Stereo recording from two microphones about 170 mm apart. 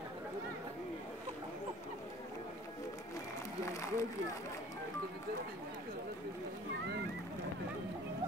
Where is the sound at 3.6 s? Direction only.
15° left (ahead or behind).